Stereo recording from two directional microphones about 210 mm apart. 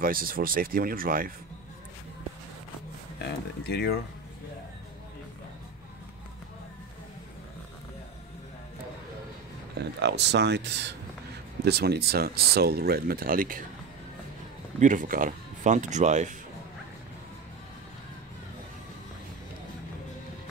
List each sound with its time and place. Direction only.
0.0 s speech: 45° right (ahead or behind)
3.2 s speech: 50° left (ahead or behind)
9.8 s speech: 55° right (ahead or behind)
14.8 s speech: 40° right (ahead or behind)